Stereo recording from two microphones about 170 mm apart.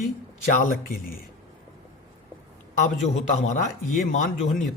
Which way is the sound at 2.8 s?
45° left (ahead or behind).